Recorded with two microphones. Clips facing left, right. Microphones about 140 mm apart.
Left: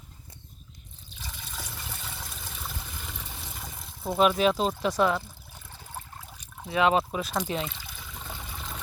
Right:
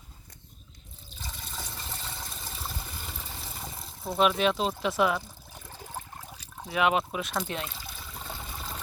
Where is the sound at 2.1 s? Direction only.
Centre (ahead or behind).